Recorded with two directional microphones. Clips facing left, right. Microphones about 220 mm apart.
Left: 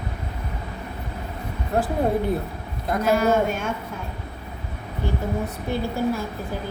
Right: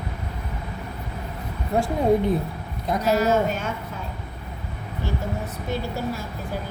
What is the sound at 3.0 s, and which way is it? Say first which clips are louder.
Speech: left 1 dB; 50° left (ahead or behind).